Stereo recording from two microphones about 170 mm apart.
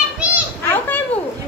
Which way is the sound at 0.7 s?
10° left (ahead or behind).